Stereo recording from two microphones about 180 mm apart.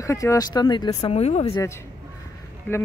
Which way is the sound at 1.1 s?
35° left (ahead or behind).